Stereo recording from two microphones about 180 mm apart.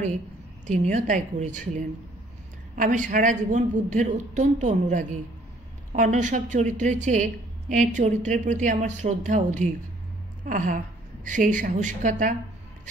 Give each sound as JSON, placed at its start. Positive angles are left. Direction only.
{"t": 0.7, "sound": "a woman's voice", "side_deg": -45}